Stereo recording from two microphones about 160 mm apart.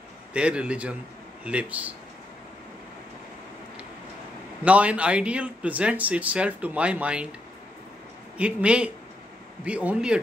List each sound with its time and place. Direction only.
0.3 s speech: 5° right (ahead or behind)
4.6 s speech: 10° right (ahead or behind)
8.4 s speech: 10° right (ahead or behind)